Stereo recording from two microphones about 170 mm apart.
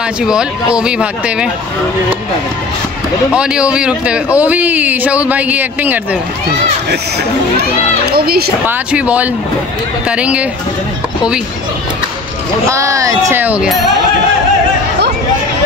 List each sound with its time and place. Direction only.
0.2 s speech: 5° right (ahead or behind)
3.3 s speech: 5° right (ahead or behind)
8.1 s a woman's voice: 65° right (ahead or behind)
8.6 s speech: 10° right (ahead or behind)
12.6 s speech: 20° right (ahead or behind)